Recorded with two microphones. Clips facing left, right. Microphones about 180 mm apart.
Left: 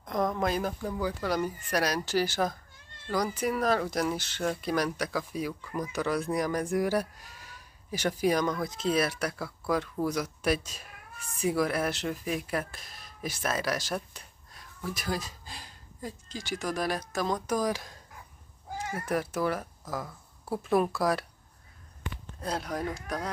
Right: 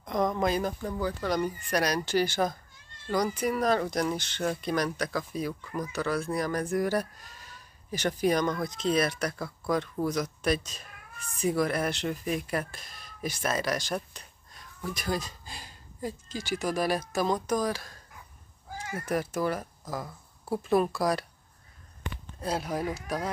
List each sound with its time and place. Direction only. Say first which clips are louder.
0.0 s speech: right 2 dB; centre (ahead or behind)
17.6 s speech: even; 15° left (ahead or behind)
19.0 s speech: right 1 dB; centre (ahead or behind)
22.4 s speech: right 2 dB; 5° right (ahead or behind)